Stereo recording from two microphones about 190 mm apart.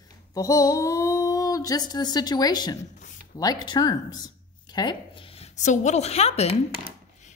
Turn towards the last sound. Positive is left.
turn(degrees=35)  # may be behind; listen again after turning